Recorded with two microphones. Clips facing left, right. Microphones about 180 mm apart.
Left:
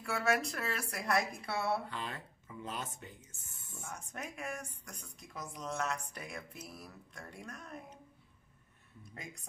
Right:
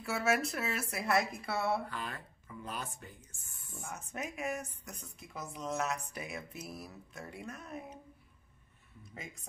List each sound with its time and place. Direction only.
0.0 s a woman's voice: 5° right (ahead or behind)
1.9 s speech: 25° left (ahead or behind)
3.9 s a woman's voice: 5° right (ahead or behind)
9.1 s a woman's voice: centre (ahead or behind)